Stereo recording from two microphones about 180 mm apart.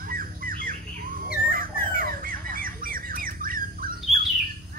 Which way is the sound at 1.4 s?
50° right (ahead or behind).